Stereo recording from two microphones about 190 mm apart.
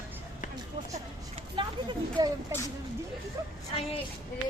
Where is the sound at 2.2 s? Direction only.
20° right (ahead or behind).